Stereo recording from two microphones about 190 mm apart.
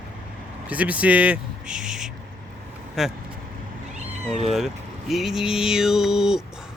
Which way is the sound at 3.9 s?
35° right (ahead or behind).